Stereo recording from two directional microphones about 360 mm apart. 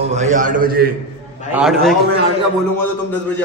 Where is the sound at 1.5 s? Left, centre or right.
Centre.